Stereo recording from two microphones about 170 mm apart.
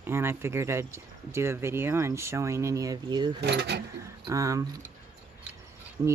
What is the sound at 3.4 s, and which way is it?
Speech, 80° right.